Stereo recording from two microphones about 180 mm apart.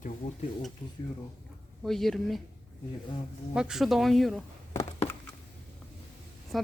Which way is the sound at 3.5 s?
5° right (ahead or behind).